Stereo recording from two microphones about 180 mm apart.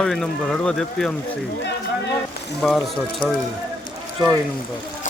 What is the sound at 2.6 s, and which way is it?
Speech, 5° left (ahead or behind).